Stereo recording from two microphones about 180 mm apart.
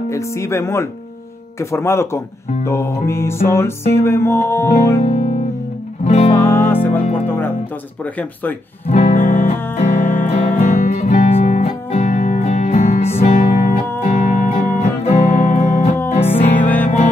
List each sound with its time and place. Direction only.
0.1 s music: 15° left (ahead or behind)
5.0 s speech: 40° left (ahead or behind)
6.3 s music: 15° left (ahead or behind)
8.8 s music: 40° left (ahead or behind)
16.5 s music: 10° left (ahead or behind)